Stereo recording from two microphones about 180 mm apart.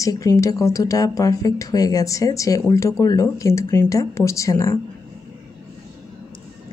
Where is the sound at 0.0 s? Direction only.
20° left (ahead or behind).